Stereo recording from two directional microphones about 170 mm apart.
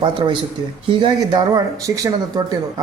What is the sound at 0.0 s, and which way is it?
Speech, 30° right (ahead or behind).